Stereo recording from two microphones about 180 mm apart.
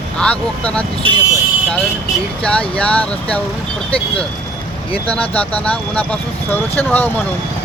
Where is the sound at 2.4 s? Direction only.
5° left (ahead or behind).